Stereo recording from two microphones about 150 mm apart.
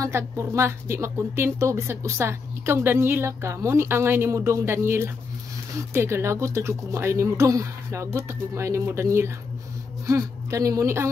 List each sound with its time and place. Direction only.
0.0 s a woman's voice: 20° right (ahead or behind)